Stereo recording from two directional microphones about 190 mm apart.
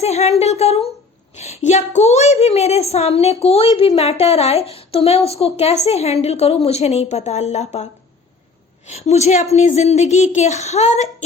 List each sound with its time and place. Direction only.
0.0 s a woman's voice: 35° left (ahead or behind)
8.9 s a woman's voice: 35° left (ahead or behind)